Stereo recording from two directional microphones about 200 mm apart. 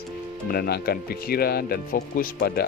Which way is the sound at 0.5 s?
50° left (ahead or behind).